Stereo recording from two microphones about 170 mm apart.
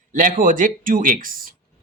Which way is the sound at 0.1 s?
50° right (ahead or behind).